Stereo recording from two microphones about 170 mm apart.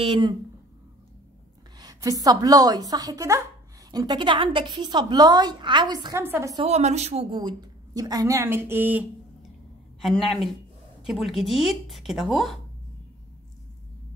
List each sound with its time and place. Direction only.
0.0 s a woman's voice: 30° right (ahead or behind)
1.8 s a woman's voice: 20° right (ahead or behind)
6.2 s a woman's voice: 10° right (ahead or behind)
6.5 s a woman's voice: 35° right (ahead or behind); by 9.5 s 10° right (ahead or behind)
10.0 s speech: centre (ahead or behind)